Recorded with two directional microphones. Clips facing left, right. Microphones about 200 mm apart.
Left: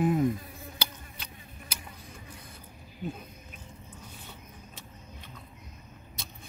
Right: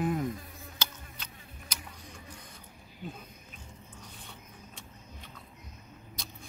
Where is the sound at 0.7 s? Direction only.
10° left (ahead or behind).